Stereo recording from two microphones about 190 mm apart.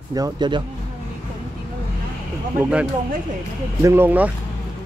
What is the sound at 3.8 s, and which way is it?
Speech, 10° right (ahead or behind).